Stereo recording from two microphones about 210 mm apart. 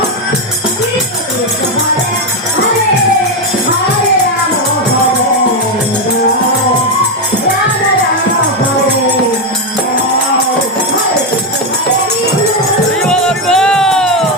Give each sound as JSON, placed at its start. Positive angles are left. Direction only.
{"t": 13.0, "sound": "music", "side_deg": 5}